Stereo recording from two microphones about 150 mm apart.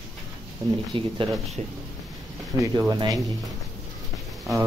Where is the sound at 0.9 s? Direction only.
35° right (ahead or behind).